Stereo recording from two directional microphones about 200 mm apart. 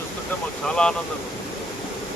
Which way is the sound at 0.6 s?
5° left (ahead or behind).